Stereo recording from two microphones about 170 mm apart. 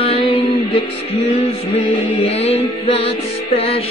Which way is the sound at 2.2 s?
35° left (ahead or behind).